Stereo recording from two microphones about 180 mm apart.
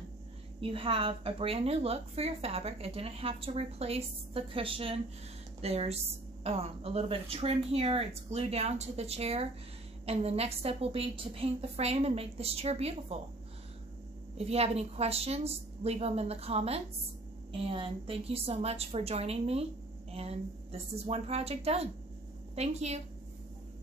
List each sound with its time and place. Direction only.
0.6 s a woman's voice: 30° right (ahead or behind)
14.3 s a woman's voice: 35° right (ahead or behind)